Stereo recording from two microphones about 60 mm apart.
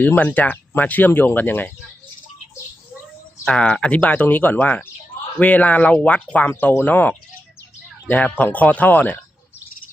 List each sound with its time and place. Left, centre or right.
0.0 s speech: left
3.4 s speech: centre